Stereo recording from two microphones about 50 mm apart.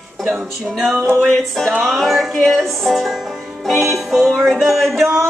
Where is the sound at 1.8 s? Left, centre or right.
Centre.